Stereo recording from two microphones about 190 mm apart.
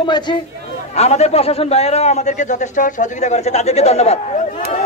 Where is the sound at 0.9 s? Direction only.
35° left (ahead or behind).